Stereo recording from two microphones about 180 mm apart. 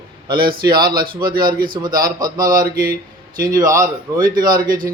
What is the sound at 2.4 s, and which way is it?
Speech, 50° right (ahead or behind).